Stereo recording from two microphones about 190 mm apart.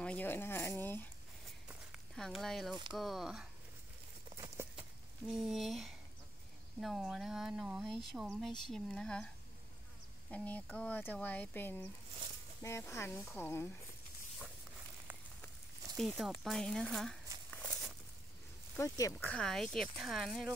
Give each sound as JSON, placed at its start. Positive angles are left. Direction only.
{"t": 0.0, "sound": "speech", "side_deg": 10}
{"t": 2.1, "sound": "speech", "side_deg": 0}
{"t": 4.6, "sound": "a sound", "side_deg": -15}
{"t": 5.2, "sound": "speech", "side_deg": 0}
{"t": 10.3, "sound": "speech", "side_deg": 10}
{"t": 16.2, "sound": "speech", "side_deg": 0}
{"t": 17.5, "sound": "a sound", "side_deg": 5}
{"t": 18.8, "sound": "speech", "side_deg": 15}
{"t": 19.1, "sound": "speech", "side_deg": 5}